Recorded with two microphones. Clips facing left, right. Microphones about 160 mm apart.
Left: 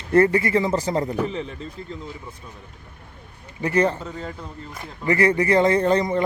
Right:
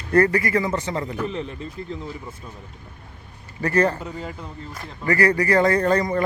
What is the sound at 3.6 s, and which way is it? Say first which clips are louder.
Speech: even; 20° left (ahead or behind).